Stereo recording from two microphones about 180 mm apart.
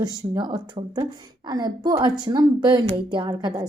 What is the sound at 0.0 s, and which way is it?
A woman's voice, 25° right (ahead or behind).